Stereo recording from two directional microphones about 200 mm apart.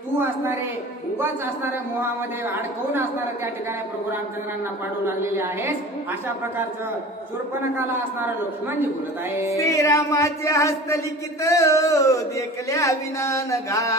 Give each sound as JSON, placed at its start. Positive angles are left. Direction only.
{"t": 1.1, "sound": "a man's voice", "side_deg": -10}
{"t": 5.0, "sound": "a man's voice", "side_deg": -10}
{"t": 9.6, "sound": "a sound", "side_deg": 15}